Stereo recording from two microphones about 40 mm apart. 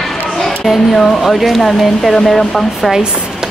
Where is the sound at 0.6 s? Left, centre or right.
Centre.